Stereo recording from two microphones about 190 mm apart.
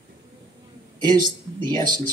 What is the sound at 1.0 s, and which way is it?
Speech, 20° right (ahead or behind).